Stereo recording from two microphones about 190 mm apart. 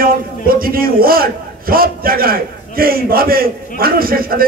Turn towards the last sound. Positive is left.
turn(degrees=-50)  # may be behind; listen again after turning